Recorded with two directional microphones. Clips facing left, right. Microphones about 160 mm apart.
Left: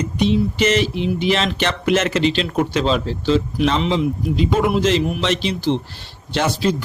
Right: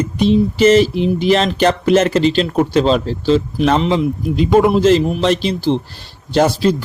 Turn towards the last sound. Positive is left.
turn(degrees=-40)  # may be behind; listen again after turning